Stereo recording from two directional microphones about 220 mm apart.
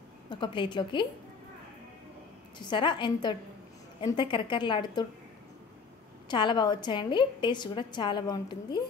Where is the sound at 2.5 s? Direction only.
20° left (ahead or behind).